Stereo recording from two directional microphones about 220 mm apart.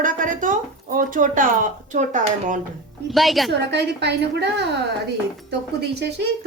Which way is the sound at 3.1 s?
Centre (ahead or behind).